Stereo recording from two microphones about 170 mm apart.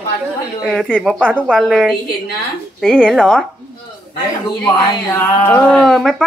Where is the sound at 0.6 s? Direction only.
5° right (ahead or behind).